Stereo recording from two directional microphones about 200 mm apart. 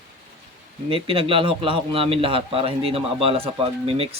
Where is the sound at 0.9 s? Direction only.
25° right (ahead or behind).